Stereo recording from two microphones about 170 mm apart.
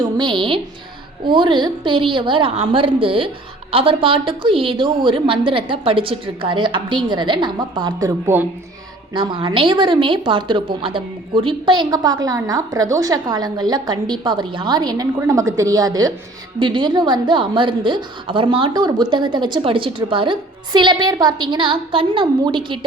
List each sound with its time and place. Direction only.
0.0 s a woman's voice: 25° right (ahead or behind)
9.1 s a woman's voice: 30° right (ahead or behind)